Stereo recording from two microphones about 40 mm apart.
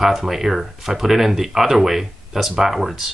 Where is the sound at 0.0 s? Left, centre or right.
Centre.